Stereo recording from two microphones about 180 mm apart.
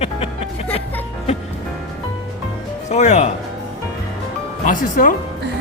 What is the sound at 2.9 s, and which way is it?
Music, 40° left (ahead or behind).